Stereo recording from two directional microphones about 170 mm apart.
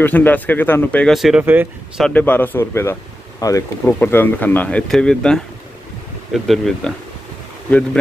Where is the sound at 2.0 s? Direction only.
10° left (ahead or behind).